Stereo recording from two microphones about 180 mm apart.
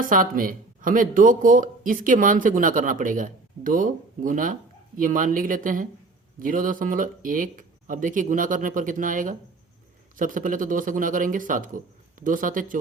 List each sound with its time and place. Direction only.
0.0 s speech: 50° right (ahead or behind)